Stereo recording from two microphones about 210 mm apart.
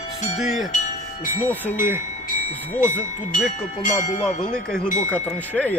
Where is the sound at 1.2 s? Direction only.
40° left (ahead or behind).